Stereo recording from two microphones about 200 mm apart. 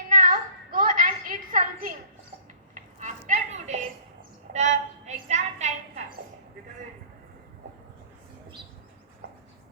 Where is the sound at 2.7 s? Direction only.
40° right (ahead or behind).